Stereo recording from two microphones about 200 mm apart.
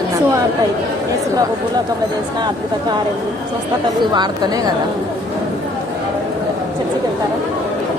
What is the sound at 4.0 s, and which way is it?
Speech, 20° right (ahead or behind).